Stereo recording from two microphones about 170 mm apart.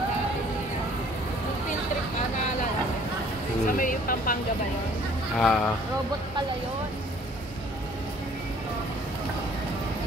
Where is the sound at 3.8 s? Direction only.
55° left (ahead or behind).